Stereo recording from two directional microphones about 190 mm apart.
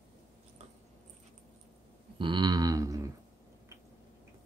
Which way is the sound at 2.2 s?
25° right (ahead or behind).